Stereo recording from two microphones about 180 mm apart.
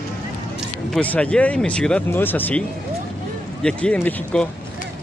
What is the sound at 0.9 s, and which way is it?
Speech, 5° left (ahead or behind).